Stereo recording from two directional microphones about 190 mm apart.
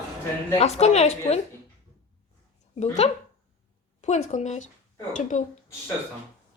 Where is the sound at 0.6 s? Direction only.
35° left (ahead or behind).